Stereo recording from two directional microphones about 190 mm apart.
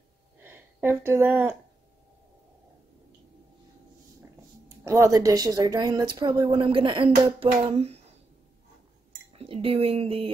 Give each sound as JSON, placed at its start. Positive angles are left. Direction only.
{"t": 0.4, "sound": "speech", "side_deg": -10}
{"t": 4.8, "sound": "a woman's voice", "side_deg": -15}
{"t": 7.3, "sound": "a sound", "side_deg": -35}
{"t": 9.4, "sound": "a woman's voice", "side_deg": -30}